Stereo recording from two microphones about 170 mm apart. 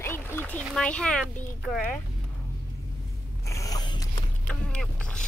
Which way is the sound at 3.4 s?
20° left (ahead or behind).